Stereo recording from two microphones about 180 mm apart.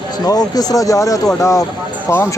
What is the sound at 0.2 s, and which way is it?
Speech, 20° left (ahead or behind).